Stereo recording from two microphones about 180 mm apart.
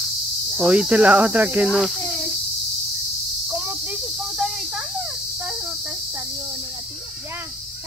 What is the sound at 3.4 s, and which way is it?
Cricket, 5° right (ahead or behind).